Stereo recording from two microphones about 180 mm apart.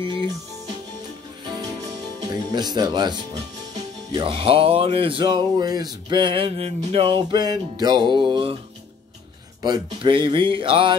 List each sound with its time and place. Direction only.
2.1 s speech: 25° right (ahead or behind)
4.1 s music: 30° right (ahead or behind)
9.6 s music: 25° right (ahead or behind)